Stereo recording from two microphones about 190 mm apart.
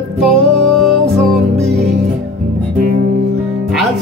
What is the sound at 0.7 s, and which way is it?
Music, centre (ahead or behind).